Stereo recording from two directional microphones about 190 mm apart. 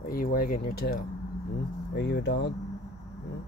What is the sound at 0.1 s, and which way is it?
Speech, 50° left (ahead or behind).